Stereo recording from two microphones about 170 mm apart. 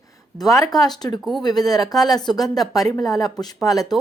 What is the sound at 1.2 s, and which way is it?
Speech, centre (ahead or behind).